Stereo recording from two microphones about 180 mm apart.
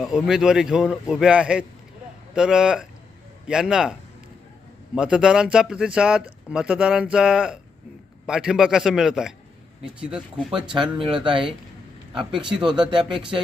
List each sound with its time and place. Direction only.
0.0 s a man's voice: centre (ahead or behind)
4.9 s a man's voice: 5° right (ahead or behind)
10.8 s speech: 30° right (ahead or behind)